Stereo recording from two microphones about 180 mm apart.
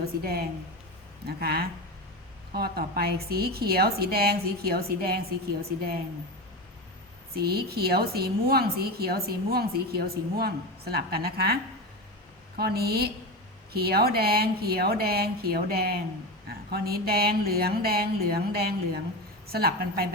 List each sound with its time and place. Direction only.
0.0 s a woman's voice: 60° right (ahead or behind)
7.3 s a woman's voice: 60° right (ahead or behind)